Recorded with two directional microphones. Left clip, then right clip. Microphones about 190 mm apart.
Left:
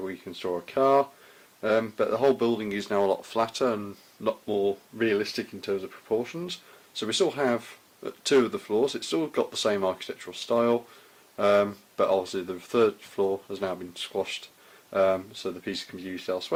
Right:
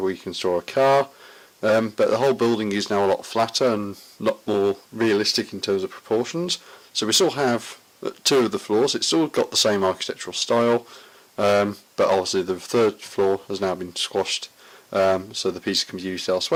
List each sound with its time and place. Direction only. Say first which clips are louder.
0.0 s speech: right 9 dB; 45° right (ahead or behind)
4.2 s speech: right 5 dB; 45° right (ahead or behind)